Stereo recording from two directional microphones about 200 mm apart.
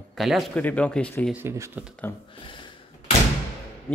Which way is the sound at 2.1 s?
10° left (ahead or behind).